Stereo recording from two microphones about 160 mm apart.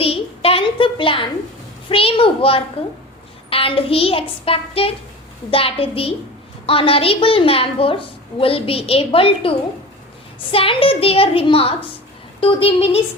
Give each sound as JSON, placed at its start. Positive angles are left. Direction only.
{"t": 0.0, "sound": "a child's voice", "side_deg": 35}